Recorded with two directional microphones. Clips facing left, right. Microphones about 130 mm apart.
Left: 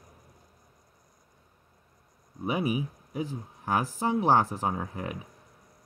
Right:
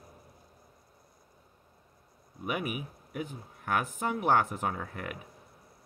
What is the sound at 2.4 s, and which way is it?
Speech, 30° left (ahead or behind).